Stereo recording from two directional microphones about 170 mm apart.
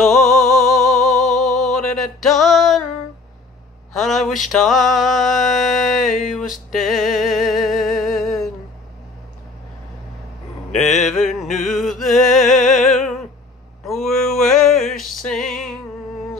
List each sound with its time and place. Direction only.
0.0 s music: centre (ahead or behind)
3.9 s mantra: centre (ahead or behind)
10.9 s music: 45° left (ahead or behind)
11.3 s music: centre (ahead or behind)